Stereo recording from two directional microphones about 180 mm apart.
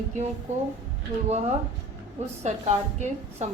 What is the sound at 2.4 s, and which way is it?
A woman's voice, 40° right (ahead or behind).